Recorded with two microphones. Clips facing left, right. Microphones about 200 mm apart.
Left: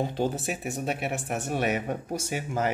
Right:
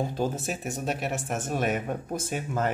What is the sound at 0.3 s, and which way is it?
Speech, centre (ahead or behind).